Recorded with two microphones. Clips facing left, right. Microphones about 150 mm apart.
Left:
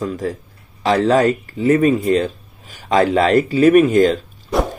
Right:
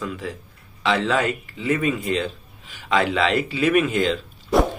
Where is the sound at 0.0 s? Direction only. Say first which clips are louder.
Left 7 dB; 40° left (ahead or behind).